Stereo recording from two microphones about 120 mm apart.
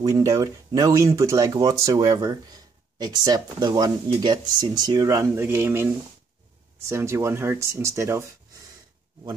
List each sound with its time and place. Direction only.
0.0 s speech: 25° right (ahead or behind)